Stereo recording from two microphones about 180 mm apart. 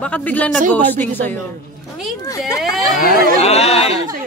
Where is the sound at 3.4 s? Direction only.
35° left (ahead or behind).